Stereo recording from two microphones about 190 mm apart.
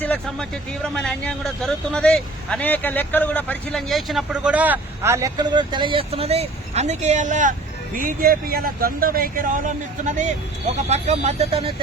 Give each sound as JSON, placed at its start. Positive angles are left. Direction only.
{"t": 0.0, "sound": "speech", "side_deg": 5}